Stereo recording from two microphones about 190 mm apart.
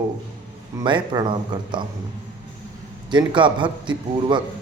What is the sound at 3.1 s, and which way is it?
Mantra, 25° right (ahead or behind).